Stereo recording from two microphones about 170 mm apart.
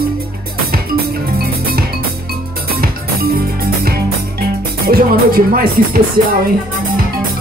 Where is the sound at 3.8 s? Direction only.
65° right (ahead or behind).